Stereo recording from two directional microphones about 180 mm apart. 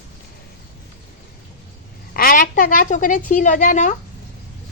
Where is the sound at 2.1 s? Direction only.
50° left (ahead or behind).